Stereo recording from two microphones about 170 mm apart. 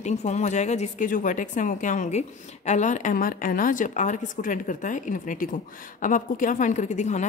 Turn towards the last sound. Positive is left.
turn(degrees=45)  # may be behind; listen again after turning